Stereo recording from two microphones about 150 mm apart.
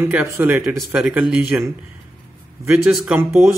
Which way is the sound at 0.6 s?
5° right (ahead or behind).